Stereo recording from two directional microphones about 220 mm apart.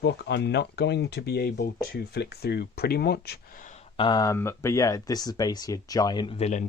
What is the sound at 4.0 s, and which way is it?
Speech, 20° left (ahead or behind).